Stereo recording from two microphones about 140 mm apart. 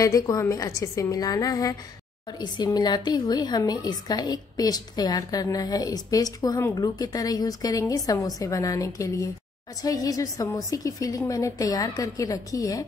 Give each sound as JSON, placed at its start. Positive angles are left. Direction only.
{"t": 0.0, "sound": "a woman's voice", "side_deg": 25}